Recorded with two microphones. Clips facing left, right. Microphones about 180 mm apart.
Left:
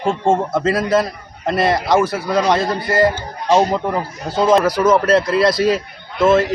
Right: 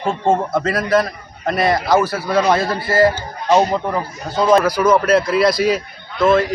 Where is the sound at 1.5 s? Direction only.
Centre (ahead or behind).